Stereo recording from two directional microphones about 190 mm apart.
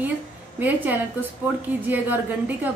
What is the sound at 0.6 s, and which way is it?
A woman's voice, 10° right (ahead or behind).